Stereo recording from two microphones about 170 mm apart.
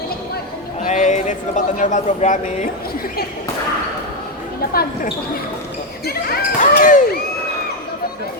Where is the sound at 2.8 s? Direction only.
60° left (ahead or behind).